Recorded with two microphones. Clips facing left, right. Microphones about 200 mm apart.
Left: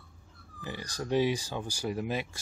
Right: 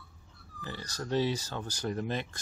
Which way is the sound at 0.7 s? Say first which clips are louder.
Left 2 dB; 15° left (ahead or behind).